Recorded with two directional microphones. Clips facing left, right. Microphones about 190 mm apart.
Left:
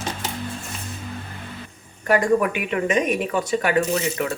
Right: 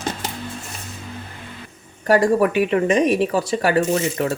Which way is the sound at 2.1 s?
35° right (ahead or behind).